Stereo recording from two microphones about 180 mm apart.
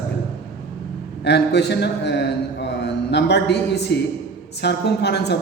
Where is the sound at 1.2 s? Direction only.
70° left (ahead or behind).